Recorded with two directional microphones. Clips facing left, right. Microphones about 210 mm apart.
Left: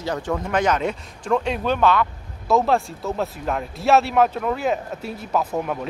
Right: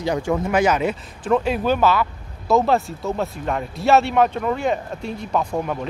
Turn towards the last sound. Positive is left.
turn(degrees=5)  # may be behind; listen again after turning